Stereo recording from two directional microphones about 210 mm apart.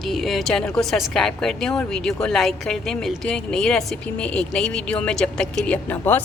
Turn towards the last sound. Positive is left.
turn(degrees=10)  # may be behind; listen again after turning